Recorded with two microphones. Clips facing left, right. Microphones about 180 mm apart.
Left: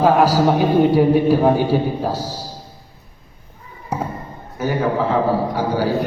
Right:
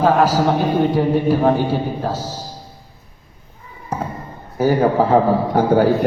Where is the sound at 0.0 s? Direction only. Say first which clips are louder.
Left 1 dB; 10° left (ahead or behind).